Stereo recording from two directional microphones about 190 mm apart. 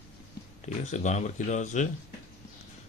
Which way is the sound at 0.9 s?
40° left (ahead or behind).